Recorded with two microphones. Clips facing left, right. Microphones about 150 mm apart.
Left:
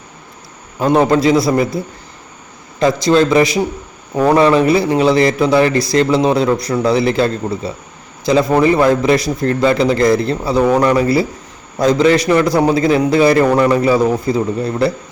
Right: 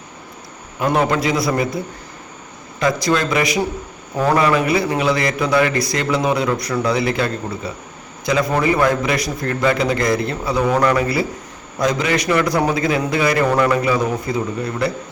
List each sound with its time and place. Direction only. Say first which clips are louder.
0.8 s a man's voice: left 6 dB; 30° left (ahead or behind)
2.8 s a man's voice: left 6 dB; 30° left (ahead or behind)